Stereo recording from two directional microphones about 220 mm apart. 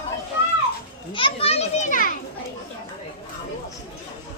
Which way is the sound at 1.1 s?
25° left (ahead or behind).